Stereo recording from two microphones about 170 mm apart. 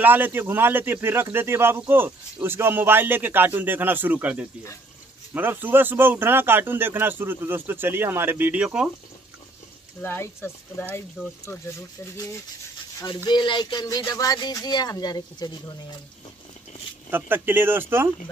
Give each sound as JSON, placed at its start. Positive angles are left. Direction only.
{"t": 0.0, "sound": "speech", "side_deg": -10}
{"t": 10.0, "sound": "speech", "side_deg": 15}
{"t": 13.0, "sound": "speech", "side_deg": 25}
{"t": 17.1, "sound": "speech", "side_deg": -10}